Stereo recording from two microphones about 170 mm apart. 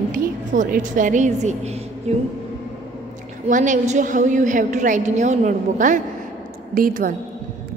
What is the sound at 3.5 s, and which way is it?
A woman's voice, 45° right (ahead or behind).